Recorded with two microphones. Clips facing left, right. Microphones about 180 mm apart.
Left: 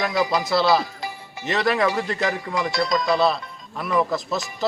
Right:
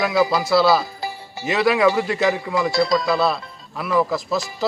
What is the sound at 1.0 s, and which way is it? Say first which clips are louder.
Music: right 3 dB; 30° right (ahead or behind).